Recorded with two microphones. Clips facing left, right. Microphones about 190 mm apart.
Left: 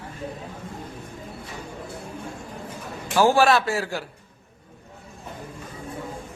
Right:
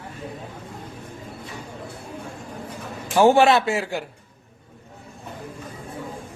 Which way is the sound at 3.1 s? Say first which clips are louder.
Right 3 dB; 20° right (ahead or behind).